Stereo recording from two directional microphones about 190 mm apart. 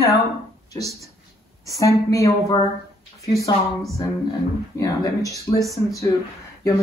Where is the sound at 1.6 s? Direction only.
15° left (ahead or behind).